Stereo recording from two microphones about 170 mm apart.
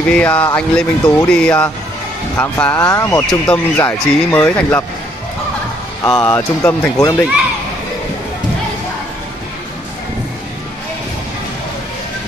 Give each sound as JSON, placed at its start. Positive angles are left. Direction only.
{"t": 0.1, "sound": "speech", "side_deg": 10}
{"t": 6.0, "sound": "speech", "side_deg": 20}